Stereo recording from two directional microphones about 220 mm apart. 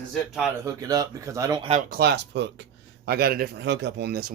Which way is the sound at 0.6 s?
15° right (ahead or behind).